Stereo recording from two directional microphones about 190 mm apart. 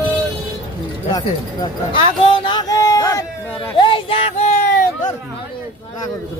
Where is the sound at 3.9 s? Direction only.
30° left (ahead or behind).